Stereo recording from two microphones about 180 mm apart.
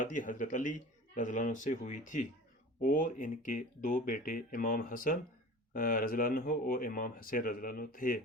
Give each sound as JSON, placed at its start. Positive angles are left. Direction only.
{"t": 0.0, "sound": "speech", "side_deg": 45}